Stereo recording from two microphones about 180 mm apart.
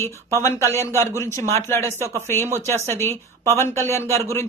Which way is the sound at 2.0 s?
15° right (ahead or behind).